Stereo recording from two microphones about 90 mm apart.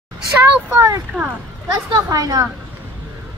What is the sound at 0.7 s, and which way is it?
Speech, 35° right (ahead or behind).